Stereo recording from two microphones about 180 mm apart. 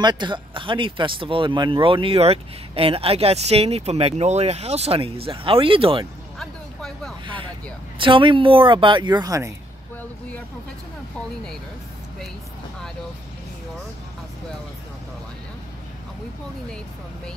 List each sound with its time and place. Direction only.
0.0 s speech: 25° right (ahead or behind)
6.4 s vehicle: 5° left (ahead or behind)
7.2 s a sound: 30° right (ahead or behind)
8.0 s speech: 30° right (ahead or behind)